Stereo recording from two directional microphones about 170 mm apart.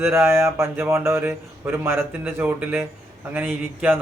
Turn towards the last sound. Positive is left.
turn(degrees=-10)  # may be behind; listen again after turning